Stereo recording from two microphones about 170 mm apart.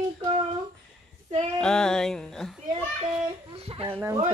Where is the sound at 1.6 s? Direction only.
5° left (ahead or behind).